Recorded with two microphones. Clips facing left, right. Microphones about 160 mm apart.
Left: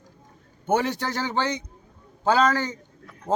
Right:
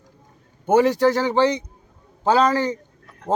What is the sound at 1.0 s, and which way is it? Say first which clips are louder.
Speech: right 11 dB; 35° right (ahead or behind).